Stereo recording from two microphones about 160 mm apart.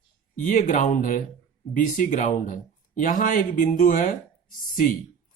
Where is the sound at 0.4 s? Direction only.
55° left (ahead or behind).